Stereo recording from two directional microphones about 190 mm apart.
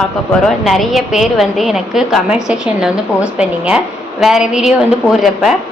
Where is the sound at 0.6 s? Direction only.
Centre (ahead or behind).